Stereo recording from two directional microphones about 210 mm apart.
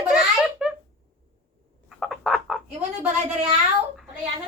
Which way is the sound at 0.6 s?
5° right (ahead or behind).